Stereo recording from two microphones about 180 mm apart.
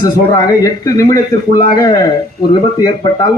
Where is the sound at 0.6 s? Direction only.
20° left (ahead or behind).